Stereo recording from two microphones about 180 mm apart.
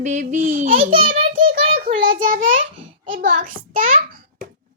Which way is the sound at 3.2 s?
50° right (ahead or behind).